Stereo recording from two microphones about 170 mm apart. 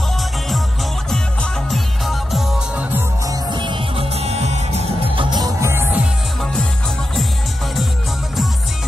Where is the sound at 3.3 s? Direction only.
30° right (ahead or behind).